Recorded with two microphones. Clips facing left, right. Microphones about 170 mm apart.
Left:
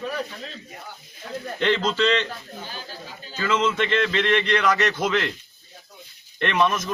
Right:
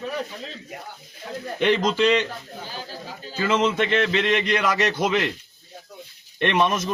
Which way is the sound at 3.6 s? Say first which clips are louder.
Right 1 dB; 10° right (ahead or behind).